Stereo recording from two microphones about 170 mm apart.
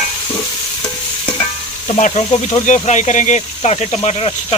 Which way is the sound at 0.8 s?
30° left (ahead or behind).